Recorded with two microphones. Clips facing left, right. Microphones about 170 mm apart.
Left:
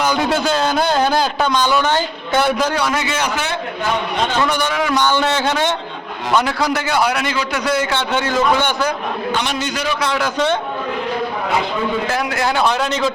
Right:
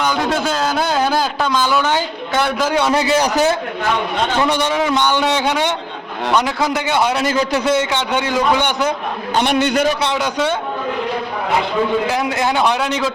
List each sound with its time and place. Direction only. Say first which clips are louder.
0.0 s a man's voice: left 1 dB; centre (ahead or behind)
2.7 s a man's voice: right 5 dB; 25° right (ahead or behind)
4.4 s a man's voice: right 2 dB; 25° right (ahead or behind)
9.3 s a man's voice: right 10 dB; 55° right (ahead or behind)
10.0 s a man's voice: even; 20° right (ahead or behind)
10.3 s a man's voice: left 1 dB; 10° right (ahead or behind)
12.0 s a man's voice: right 1 dB; 20° right (ahead or behind)